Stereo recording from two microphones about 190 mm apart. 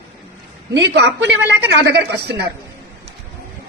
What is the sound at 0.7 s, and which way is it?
A woman's voice, 65° right (ahead or behind).